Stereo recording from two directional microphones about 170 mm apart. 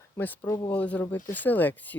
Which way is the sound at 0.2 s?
15° left (ahead or behind).